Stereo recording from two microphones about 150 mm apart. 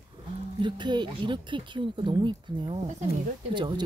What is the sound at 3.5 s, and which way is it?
Speech, 30° right (ahead or behind).